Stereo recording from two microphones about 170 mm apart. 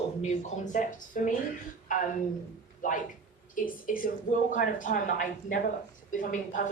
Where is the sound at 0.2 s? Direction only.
45° left (ahead or behind).